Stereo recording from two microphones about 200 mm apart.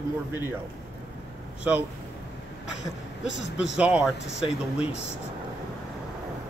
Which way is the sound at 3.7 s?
5° right (ahead or behind).